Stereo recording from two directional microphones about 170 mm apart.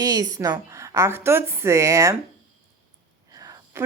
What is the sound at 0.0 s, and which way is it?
Speech, 20° right (ahead or behind).